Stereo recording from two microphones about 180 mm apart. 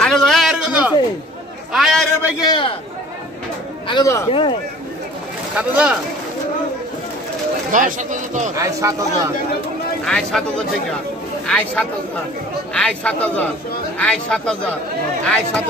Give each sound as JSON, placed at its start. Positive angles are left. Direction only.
{"t": 0.0, "sound": "a sound", "side_deg": 0}
{"t": 2.4, "sound": "speech", "side_deg": 25}
{"t": 3.8, "sound": "speech", "side_deg": 20}
{"t": 4.3, "sound": "speech", "side_deg": 30}
{"t": 5.6, "sound": "speech", "side_deg": -5}
{"t": 7.7, "sound": "speech", "side_deg": -45}
{"t": 8.5, "sound": "speech", "side_deg": -15}
{"t": 10.0, "sound": "speech", "side_deg": 5}
{"t": 11.4, "sound": "speech", "side_deg": 5}